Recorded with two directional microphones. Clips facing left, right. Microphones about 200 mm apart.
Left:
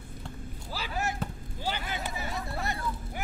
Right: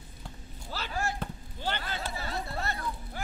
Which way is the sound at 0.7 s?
10° left (ahead or behind).